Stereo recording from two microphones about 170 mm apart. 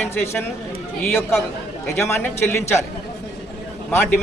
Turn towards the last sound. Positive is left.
turn(degrees=15)  # may be behind; listen again after turning